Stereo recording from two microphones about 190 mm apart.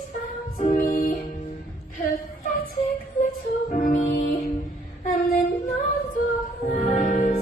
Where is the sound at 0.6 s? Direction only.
45° left (ahead or behind).